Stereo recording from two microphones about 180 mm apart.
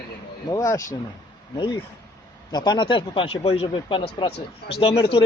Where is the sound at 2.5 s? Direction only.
25° left (ahead or behind).